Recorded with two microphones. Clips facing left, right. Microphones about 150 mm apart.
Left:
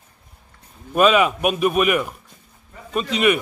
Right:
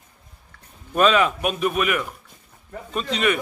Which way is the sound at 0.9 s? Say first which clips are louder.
Left 2 dB; 10° left (ahead or behind).